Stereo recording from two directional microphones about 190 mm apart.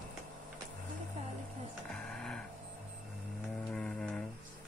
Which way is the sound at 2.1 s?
5° left (ahead or behind).